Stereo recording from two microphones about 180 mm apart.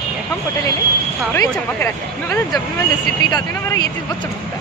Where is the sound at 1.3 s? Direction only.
15° left (ahead or behind).